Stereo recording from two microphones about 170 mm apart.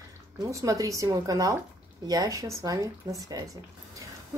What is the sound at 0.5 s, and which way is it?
A woman's voice, 20° right (ahead or behind).